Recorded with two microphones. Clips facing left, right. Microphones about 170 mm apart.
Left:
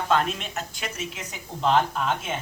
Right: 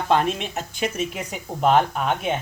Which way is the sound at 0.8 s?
55° right (ahead or behind).